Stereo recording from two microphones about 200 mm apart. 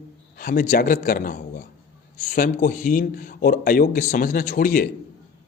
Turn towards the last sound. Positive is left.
turn(degrees=45)  # may be behind; listen again after turning